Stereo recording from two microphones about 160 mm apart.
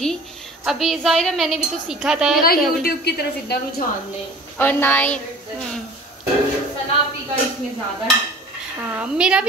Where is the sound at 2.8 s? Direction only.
80° left.